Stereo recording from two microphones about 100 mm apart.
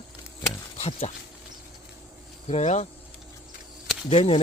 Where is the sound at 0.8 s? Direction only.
90° left.